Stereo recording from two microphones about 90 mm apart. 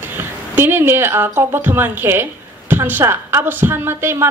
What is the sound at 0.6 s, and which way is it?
A woman's voice, 25° right (ahead or behind).